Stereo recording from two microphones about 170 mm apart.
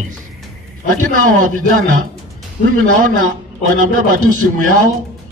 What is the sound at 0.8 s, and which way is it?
A man's voice, 50° right (ahead or behind).